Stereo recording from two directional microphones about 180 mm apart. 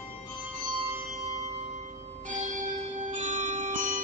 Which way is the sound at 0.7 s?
30° right (ahead or behind).